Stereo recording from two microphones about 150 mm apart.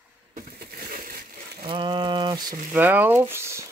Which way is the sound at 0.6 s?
80° right.